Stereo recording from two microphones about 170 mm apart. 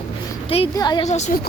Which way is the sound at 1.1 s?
45° left (ahead or behind).